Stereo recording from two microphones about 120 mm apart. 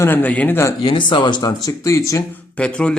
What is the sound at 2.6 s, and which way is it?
Speech, 10° left (ahead or behind).